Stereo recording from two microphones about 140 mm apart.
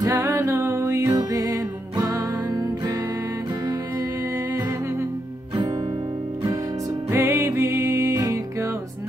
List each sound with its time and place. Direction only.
0.0 s music: 20° right (ahead or behind)
7.1 s music: 15° right (ahead or behind)